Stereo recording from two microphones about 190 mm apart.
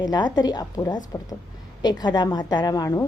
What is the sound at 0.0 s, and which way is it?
A woman's voice, 20° left (ahead or behind).